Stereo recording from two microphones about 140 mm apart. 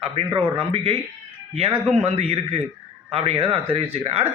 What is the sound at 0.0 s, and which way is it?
Speech, 40° right (ahead or behind).